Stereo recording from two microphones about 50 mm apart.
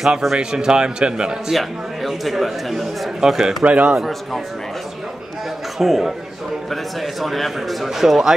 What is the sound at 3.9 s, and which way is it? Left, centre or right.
Speech, centre.